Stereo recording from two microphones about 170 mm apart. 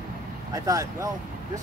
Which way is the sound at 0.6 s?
20° right (ahead or behind).